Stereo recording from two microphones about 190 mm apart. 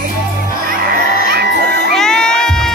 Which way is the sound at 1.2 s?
60° right (ahead or behind).